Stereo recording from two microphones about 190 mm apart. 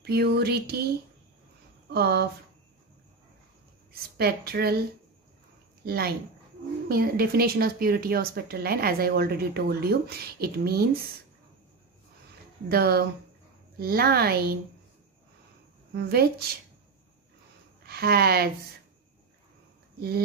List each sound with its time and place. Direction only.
0.0 s speech: 55° right (ahead or behind)
1.9 s speech: 55° right (ahead or behind)
3.9 s speech: 55° right (ahead or behind)
5.9 s a woman's voice: 55° right (ahead or behind)
12.6 s a woman's voice: 55° right (ahead or behind)
15.9 s speech: 55° right (ahead or behind)
17.8 s speech: 55° right (ahead or behind)
20.0 s speech: 55° right (ahead or behind)